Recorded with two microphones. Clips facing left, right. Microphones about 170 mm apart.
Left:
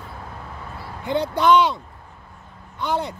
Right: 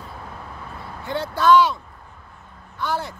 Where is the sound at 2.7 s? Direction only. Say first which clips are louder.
Left 2 dB; 20° left (ahead or behind).